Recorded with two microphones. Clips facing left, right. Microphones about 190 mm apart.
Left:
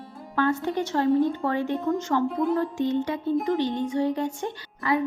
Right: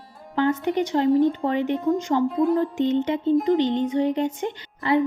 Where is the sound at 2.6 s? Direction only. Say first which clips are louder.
Right 3 dB; 20° right (ahead or behind).